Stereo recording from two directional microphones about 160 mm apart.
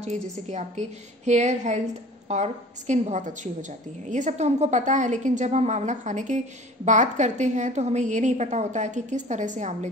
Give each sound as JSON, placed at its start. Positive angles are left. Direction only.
{"t": 0.0, "sound": "a woman's voice", "side_deg": -45}